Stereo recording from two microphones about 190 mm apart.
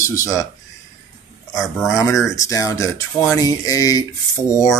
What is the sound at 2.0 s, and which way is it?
Speech, 15° left (ahead or behind).